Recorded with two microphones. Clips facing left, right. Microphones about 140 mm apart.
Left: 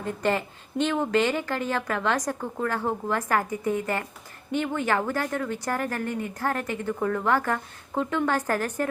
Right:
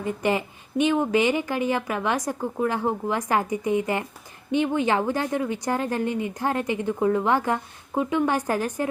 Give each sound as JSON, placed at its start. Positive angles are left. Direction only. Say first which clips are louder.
{"t": 0.0, "sound": "speech", "louder": "right 2 dB", "side_deg": -15}